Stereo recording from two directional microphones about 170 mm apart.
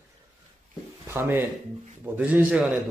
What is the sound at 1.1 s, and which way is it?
Speech, 10° right (ahead or behind).